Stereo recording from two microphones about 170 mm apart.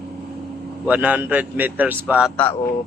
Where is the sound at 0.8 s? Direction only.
10° right (ahead or behind).